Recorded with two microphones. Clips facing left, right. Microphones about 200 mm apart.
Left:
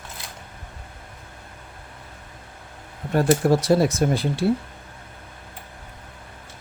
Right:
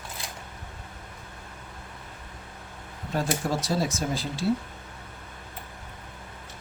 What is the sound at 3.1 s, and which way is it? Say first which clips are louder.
Speech: left 9 dB; 65° left (ahead or behind).